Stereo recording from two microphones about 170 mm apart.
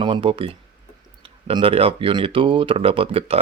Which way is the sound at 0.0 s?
30° right (ahead or behind).